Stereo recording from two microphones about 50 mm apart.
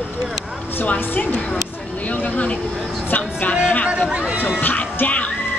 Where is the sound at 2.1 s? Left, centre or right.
Left.